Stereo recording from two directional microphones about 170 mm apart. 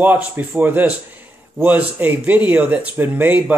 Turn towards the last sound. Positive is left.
turn(degrees=-10)  # may be behind; listen again after turning